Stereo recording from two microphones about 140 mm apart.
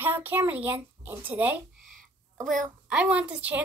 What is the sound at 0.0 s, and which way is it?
A child's voice, 15° right (ahead or behind).